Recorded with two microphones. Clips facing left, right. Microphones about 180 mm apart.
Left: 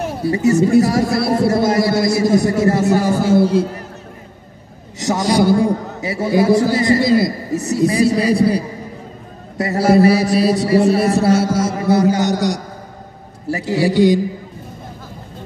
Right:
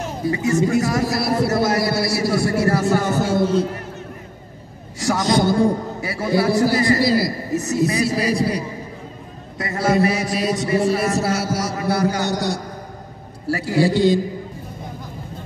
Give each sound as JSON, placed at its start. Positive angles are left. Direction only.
{"t": 0.5, "sound": "a man's voice", "side_deg": 35}
{"t": 3.0, "sound": "a sound", "side_deg": 35}
{"t": 4.9, "sound": "a man's voice", "side_deg": 20}
{"t": 6.0, "sound": "a man's voice", "side_deg": 25}
{"t": 9.6, "sound": "a sound", "side_deg": 35}
{"t": 11.2, "sound": "a man's voice", "side_deg": 25}